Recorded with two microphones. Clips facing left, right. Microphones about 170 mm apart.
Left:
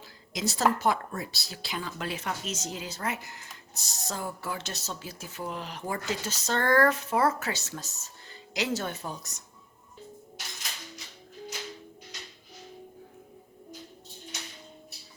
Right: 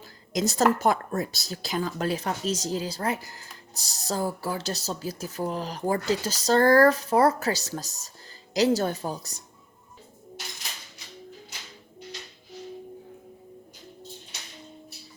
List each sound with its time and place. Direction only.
0.3 s a woman's voice: 45° right (ahead or behind)